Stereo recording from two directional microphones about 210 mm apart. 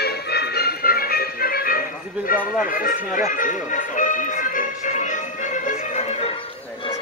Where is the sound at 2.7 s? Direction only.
40° left (ahead or behind).